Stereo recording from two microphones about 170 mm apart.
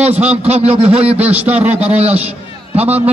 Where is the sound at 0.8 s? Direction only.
5° right (ahead or behind).